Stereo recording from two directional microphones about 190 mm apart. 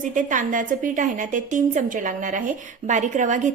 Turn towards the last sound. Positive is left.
turn(degrees=-40)  # may be behind; listen again after turning